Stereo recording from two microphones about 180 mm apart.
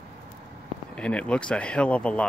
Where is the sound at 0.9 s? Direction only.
5° left (ahead or behind).